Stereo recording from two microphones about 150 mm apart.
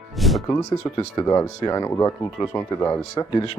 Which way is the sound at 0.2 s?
Centre (ahead or behind).